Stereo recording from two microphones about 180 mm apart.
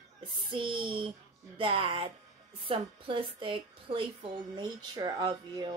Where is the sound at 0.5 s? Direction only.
30° right (ahead or behind).